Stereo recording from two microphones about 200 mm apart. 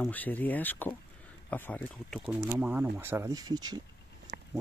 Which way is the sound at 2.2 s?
10° right (ahead or behind).